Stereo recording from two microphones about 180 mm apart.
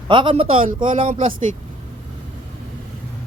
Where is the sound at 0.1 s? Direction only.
30° right (ahead or behind).